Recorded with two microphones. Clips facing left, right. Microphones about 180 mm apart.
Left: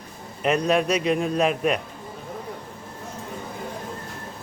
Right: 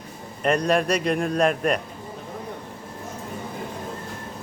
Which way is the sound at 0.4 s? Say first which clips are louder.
Even; 5° left (ahead or behind).